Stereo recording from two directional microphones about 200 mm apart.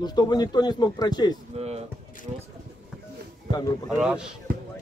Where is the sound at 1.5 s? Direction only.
30° right (ahead or behind).